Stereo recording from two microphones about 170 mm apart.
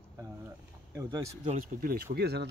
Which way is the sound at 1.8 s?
70° right (ahead or behind).